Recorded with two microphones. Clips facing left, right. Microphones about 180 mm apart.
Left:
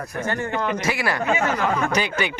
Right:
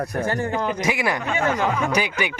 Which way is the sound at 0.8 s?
15° right (ahead or behind).